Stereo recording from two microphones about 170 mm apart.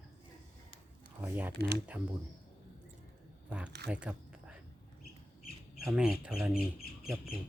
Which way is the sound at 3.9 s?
5° right (ahead or behind).